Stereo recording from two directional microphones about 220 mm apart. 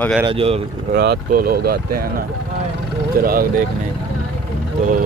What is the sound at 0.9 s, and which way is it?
Speech, 45° right (ahead or behind).